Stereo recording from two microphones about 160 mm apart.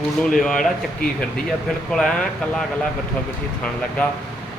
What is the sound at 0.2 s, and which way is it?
Speech, 5° left (ahead or behind).